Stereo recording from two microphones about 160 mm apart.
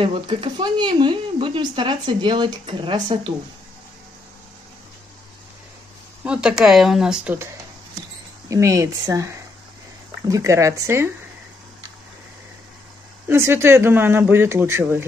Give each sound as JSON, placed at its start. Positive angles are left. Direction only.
{"t": 0.0, "sound": "speech", "side_deg": -35}
{"t": 6.2, "sound": "speech", "side_deg": -5}
{"t": 8.5, "sound": "speech", "side_deg": -20}
{"t": 13.3, "sound": "speech", "side_deg": -15}